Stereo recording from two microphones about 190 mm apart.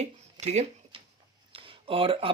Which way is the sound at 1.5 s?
30° right (ahead or behind).